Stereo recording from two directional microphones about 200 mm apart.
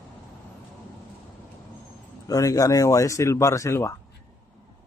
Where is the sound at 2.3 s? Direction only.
15° left (ahead or behind).